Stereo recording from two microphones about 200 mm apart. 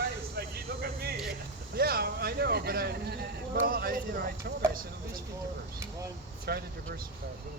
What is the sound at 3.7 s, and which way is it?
Speech, 45° right (ahead or behind).